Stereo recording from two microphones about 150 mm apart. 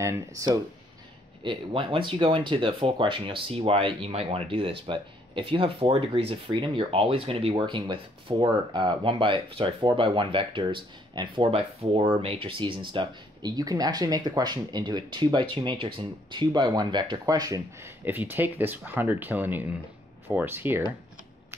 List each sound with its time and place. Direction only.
0.0 s speech: 20° right (ahead or behind)
1.4 s speech: 35° right (ahead or behind); by 20.8 s 15° right (ahead or behind)